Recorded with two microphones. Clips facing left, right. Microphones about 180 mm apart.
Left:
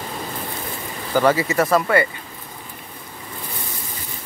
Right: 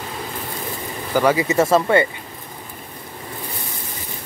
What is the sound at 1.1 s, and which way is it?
Speech, 15° right (ahead or behind).